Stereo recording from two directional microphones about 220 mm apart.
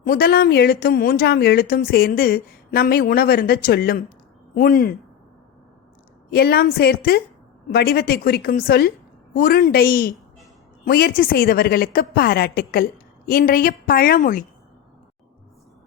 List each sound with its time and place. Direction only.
0.0 s a woman's voice: 45° left (ahead or behind)
6.3 s a woman's voice: 45° left (ahead or behind)